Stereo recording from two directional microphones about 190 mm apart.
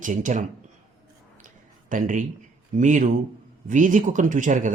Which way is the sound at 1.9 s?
45° right (ahead or behind).